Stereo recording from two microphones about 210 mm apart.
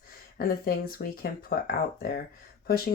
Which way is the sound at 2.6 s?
45° left (ahead or behind).